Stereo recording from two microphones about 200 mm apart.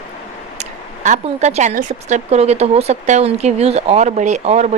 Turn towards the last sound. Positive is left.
turn(degrees=-35)  # may be behind; listen again after turning